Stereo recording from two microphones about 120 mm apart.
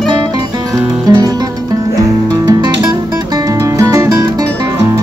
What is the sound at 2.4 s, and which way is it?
Music, 35° right (ahead or behind).